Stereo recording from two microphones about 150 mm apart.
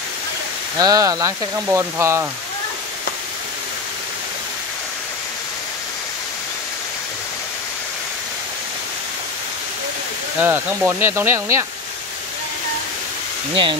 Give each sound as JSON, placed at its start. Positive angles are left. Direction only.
{"t": 0.7, "sound": "speech", "side_deg": -25}
{"t": 10.4, "sound": "speech", "side_deg": -15}
{"t": 13.5, "sound": "speech", "side_deg": -35}